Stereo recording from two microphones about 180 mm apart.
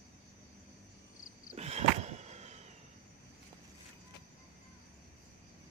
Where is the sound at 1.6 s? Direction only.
40° right (ahead or behind).